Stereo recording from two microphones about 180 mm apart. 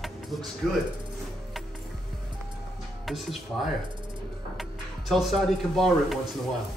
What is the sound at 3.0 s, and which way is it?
Speech, centre (ahead or behind).